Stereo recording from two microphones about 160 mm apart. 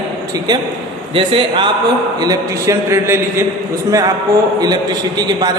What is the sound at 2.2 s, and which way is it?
A man's voice, 20° right (ahead or behind).